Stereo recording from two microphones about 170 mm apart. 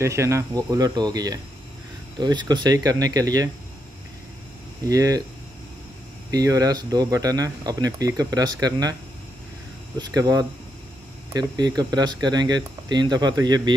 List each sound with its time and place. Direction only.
0.0 s speech: 15° right (ahead or behind)
4.8 s speech: 20° right (ahead or behind)
6.3 s speech: 20° right (ahead or behind)
9.9 s speech: 20° right (ahead or behind)